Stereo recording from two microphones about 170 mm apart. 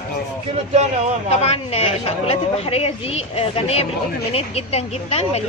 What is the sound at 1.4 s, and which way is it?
A woman's voice, 35° left (ahead or behind).